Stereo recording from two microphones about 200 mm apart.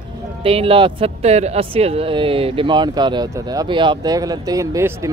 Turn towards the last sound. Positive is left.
turn(degrees=-15)  # may be behind; listen again after turning